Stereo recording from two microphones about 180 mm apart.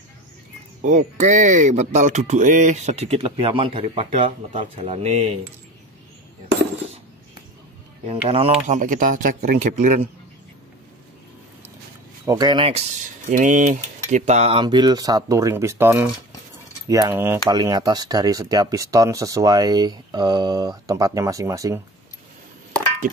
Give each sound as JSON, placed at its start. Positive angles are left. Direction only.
{"t": 0.8, "sound": "speech", "side_deg": -45}
{"t": 8.3, "sound": "speech", "side_deg": -35}
{"t": 12.3, "sound": "speech", "side_deg": -25}